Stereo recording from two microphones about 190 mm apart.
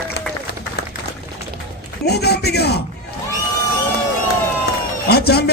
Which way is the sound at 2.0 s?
60° left (ahead or behind).